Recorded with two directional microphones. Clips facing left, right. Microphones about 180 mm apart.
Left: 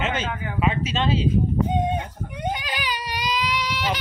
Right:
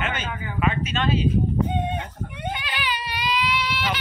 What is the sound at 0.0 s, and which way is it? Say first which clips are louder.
Speech: left 3 dB; 25° left (ahead or behind).